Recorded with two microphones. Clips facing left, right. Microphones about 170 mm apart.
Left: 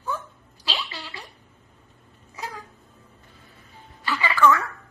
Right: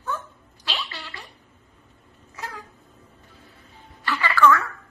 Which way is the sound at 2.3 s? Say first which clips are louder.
Left 1 dB; 10° left (ahead or behind).